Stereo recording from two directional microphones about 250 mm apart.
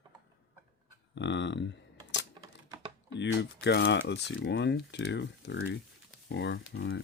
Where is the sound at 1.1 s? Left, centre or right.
Left.